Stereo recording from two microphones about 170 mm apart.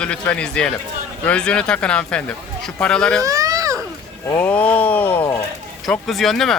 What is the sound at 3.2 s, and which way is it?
Baby cry, 20° right (ahead or behind).